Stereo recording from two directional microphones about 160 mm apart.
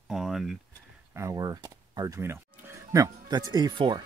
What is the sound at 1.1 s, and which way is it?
Speech, 20° right (ahead or behind).